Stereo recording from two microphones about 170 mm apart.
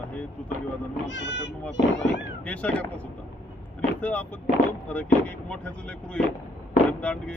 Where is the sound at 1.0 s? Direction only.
90° left.